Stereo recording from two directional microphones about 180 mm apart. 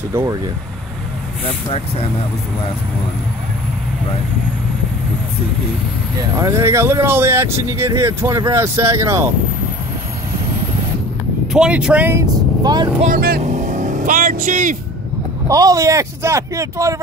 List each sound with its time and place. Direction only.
1.4 s speech: 35° left (ahead or behind)
6.3 s speech: 15° right (ahead or behind)
11.5 s speech: 5° right (ahead or behind); by 12.9 s 25° right (ahead or behind)
13.0 s speech: 55° right (ahead or behind)
15.4 s speech: 20° right (ahead or behind)